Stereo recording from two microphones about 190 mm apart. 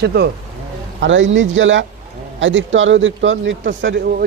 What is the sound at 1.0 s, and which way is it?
A man's voice, 80° right.